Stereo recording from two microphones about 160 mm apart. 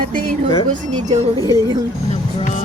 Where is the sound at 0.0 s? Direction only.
60° right (ahead or behind).